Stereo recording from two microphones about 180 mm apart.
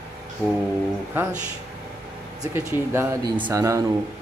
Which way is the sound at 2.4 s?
15° right (ahead or behind).